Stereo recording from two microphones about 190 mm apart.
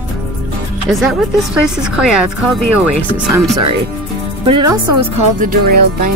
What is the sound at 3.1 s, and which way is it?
Speech, 15° right (ahead or behind).